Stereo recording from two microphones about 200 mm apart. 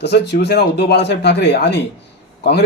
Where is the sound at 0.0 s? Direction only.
55° left (ahead or behind).